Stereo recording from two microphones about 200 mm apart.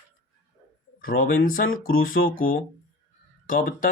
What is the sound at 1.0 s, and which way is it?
Speech, 45° left (ahead or behind).